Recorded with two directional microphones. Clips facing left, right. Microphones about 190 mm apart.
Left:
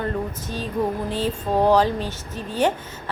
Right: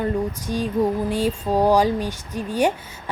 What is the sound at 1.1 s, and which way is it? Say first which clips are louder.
A woman's voice: right 2 dB; 10° right (ahead or behind).